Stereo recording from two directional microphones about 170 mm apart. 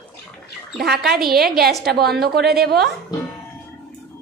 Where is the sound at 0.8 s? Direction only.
65° right (ahead or behind).